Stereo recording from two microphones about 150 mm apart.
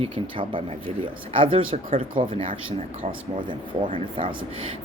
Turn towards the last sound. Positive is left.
turn(degrees=-35)  # may be behind; listen again after turning